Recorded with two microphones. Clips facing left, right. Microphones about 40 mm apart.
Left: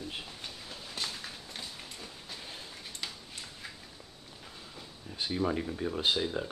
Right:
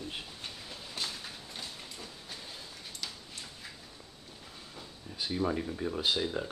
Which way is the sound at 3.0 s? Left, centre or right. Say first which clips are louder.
Left 1 dB; left.